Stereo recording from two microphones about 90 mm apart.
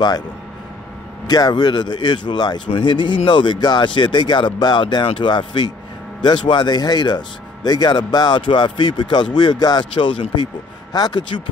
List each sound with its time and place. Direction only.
1.2 s speech: 50° left (ahead or behind)